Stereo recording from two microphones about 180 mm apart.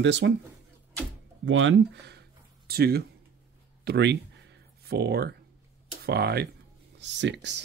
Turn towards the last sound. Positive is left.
turn(degrees=-80)